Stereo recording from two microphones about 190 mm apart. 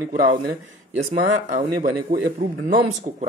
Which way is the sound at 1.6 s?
45° right (ahead or behind).